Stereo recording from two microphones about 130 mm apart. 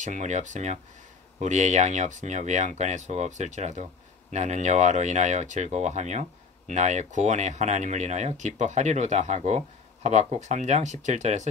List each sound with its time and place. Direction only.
0.0 s speech: 70° right (ahead or behind)